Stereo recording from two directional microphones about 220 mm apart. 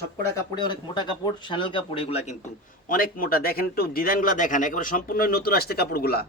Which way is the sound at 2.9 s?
40° left (ahead or behind).